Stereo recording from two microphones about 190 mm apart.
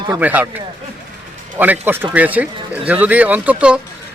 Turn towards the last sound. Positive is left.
turn(degrees=-5)  # may be behind; listen again after turning